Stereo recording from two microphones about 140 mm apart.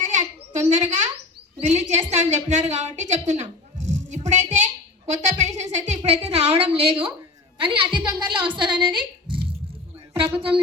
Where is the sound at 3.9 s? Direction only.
60° right (ahead or behind).